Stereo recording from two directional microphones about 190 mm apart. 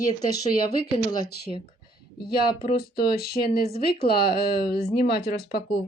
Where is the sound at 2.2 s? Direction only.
55° left (ahead or behind).